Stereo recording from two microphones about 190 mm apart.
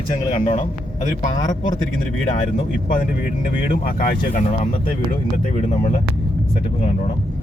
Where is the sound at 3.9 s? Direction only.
50° left (ahead or behind).